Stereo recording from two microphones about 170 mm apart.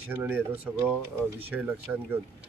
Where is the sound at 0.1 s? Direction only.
10° right (ahead or behind).